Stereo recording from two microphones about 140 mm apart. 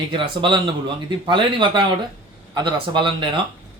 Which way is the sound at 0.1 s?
35° right (ahead or behind).